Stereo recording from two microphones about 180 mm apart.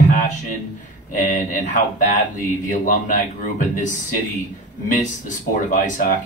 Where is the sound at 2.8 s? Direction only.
50° left (ahead or behind).